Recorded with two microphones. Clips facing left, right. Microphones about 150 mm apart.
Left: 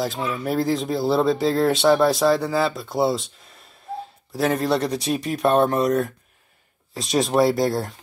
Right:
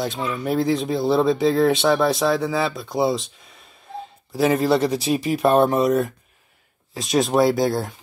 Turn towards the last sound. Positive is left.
turn(degrees=0)  # may be behind; listen again after turning